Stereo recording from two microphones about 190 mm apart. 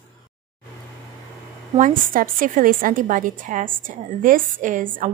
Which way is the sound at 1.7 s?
45° right (ahead or behind).